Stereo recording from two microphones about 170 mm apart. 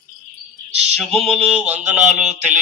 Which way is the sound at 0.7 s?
40° right (ahead or behind).